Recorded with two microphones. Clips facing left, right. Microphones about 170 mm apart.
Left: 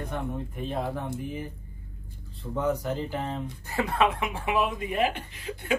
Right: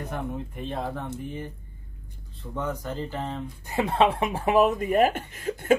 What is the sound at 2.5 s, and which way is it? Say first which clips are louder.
Speech: left 3 dB; 10° left (ahead or behind).